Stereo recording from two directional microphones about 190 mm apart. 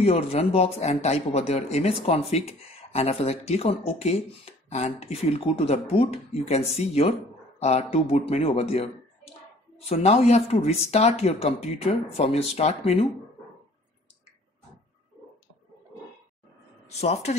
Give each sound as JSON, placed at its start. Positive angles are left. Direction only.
{"t": 0.0, "sound": "a man's voice", "side_deg": 35}
{"t": 16.9, "sound": "a man's voice", "side_deg": 35}